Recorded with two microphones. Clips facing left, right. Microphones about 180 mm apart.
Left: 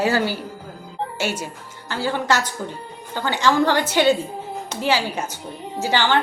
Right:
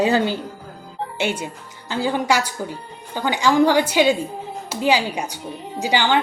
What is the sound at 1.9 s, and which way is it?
A woman's voice, 15° right (ahead or behind).